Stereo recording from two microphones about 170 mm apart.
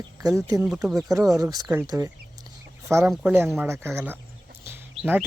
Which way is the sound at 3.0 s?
5° right (ahead or behind).